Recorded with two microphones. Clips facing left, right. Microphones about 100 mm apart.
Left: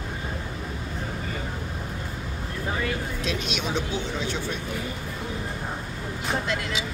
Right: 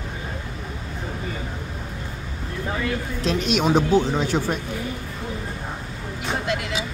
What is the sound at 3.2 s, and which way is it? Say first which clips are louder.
Speech: right 8 dB; 40° right (ahead or behind).